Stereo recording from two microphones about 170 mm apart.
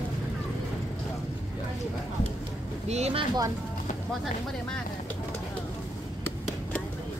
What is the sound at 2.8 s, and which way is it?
Speech, 40° right (ahead or behind).